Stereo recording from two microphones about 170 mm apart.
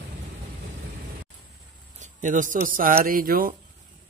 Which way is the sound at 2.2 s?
50° right (ahead or behind).